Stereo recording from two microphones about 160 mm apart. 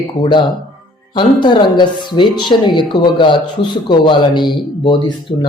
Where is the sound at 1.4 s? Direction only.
30° left (ahead or behind).